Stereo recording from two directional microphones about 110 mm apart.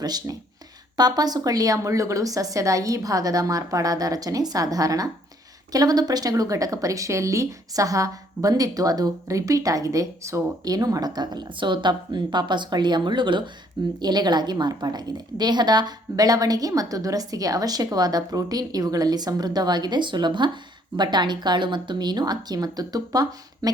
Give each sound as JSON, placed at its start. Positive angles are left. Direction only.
{"t": 0.0, "sound": "speech", "side_deg": -35}